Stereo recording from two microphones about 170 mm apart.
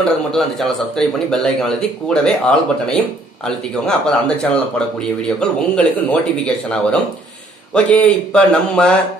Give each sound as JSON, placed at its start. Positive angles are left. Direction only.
{"t": 0.1, "sound": "a man's voice", "side_deg": 0}